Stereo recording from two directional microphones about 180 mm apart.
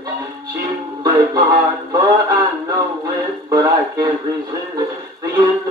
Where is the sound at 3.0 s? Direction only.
20° right (ahead or behind).